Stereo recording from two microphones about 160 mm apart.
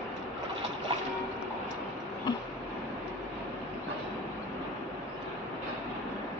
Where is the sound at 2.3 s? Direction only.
25° left (ahead or behind).